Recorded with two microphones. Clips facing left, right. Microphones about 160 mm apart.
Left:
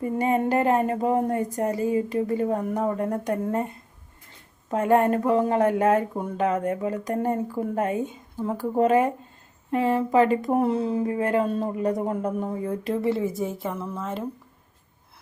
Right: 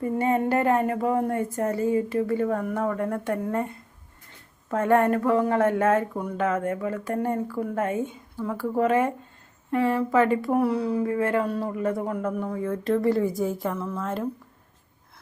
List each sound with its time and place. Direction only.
0.0 s speech: 20° left (ahead or behind)
4.7 s speech: 20° left (ahead or behind)